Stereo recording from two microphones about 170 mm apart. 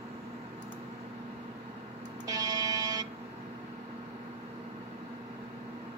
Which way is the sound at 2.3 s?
20° right (ahead or behind).